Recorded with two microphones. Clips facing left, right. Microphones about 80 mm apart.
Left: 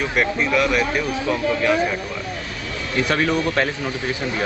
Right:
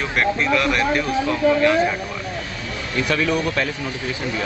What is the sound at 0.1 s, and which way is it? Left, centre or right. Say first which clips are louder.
Speech: right 3 dB; centre.